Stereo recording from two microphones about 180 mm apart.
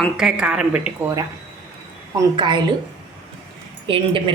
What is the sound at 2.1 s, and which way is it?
Speech, 25° right (ahead or behind).